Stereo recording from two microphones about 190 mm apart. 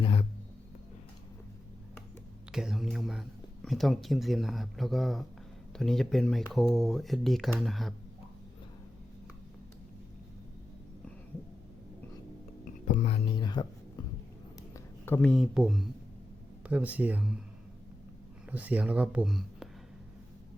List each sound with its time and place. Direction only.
0.0 s music: 30° left (ahead or behind)
2.5 s speech: centre (ahead or behind)
12.9 s music: 35° left (ahead or behind)
14.7 s speech: 10° left (ahead or behind); by 17.4 s 5° right (ahead or behind)
18.5 s speech: 5° right (ahead or behind)